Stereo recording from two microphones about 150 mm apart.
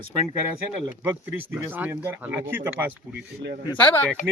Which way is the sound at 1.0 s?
15° right (ahead or behind).